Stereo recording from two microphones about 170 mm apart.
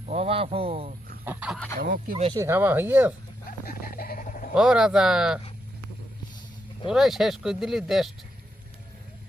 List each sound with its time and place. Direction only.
0.0 s speech: 40° right (ahead or behind)
1.2 s fowl: 10° right (ahead or behind)
1.8 s speech: 60° right (ahead or behind)
2.3 s speech: 15° right (ahead or behind)
3.8 s a sound: 60° left (ahead or behind)
4.5 s speech: 5° right (ahead or behind)
6.8 s speech: centre (ahead or behind)